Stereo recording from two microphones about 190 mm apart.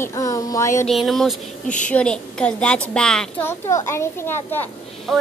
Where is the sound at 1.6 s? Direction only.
40° left (ahead or behind).